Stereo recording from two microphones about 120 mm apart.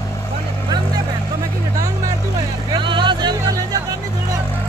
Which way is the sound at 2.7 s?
40° right (ahead or behind).